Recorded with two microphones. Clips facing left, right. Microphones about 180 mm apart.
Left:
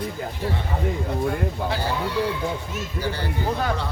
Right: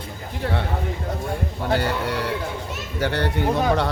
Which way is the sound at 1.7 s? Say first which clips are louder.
Right 3 dB; 70° right (ahead or behind).